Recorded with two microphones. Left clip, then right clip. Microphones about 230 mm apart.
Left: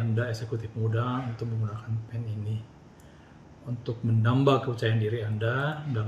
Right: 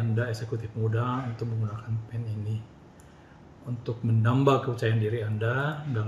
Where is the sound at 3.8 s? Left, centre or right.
Centre.